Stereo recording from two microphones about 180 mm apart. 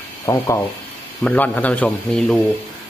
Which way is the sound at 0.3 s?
15° left (ahead or behind).